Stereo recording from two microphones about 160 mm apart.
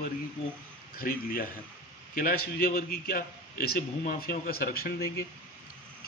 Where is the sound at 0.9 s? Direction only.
65° left (ahead or behind).